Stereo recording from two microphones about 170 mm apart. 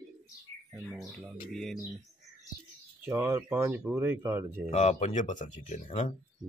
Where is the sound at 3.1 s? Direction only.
15° right (ahead or behind).